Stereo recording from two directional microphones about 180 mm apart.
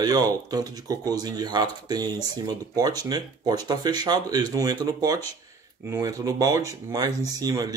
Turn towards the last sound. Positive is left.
turn(degrees=-20)  # may be behind; listen again after turning